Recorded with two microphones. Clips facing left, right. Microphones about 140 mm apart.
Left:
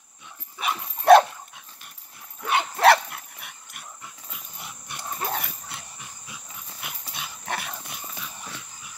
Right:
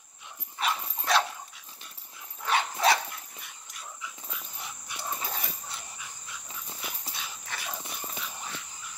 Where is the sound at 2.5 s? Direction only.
65° left (ahead or behind).